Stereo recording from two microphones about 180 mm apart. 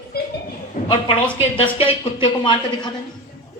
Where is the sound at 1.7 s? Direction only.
30° left (ahead or behind).